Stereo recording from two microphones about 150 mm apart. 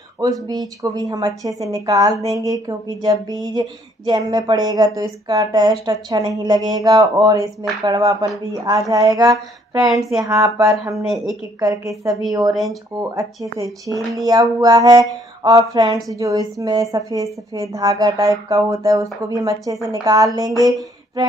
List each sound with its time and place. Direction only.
0.2 s speech: 25° right (ahead or behind)
9.8 s speech: centre (ahead or behind)
10.2 s speech: 20° right (ahead or behind)
13.6 s speech: 20° right (ahead or behind)